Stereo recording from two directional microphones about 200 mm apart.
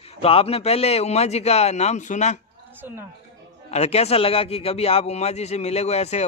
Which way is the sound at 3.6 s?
30° left (ahead or behind).